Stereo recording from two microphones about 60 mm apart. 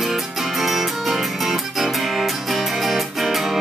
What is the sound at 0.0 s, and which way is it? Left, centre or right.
Music, centre.